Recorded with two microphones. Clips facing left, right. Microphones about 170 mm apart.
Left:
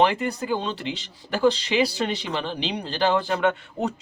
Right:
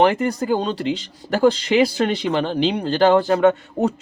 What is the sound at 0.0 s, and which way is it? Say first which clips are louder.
Speech: right 4 dB; 45° right (ahead or behind).